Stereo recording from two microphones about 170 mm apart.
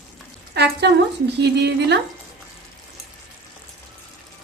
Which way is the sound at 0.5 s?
80° right.